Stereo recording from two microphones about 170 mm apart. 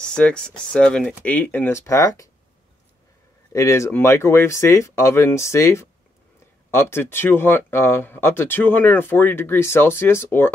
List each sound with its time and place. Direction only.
0.0 s speech: 5° left (ahead or behind)
3.5 s speech: 20° left (ahead or behind)